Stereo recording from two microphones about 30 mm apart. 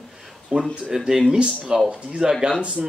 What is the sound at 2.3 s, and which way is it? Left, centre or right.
Speech, centre.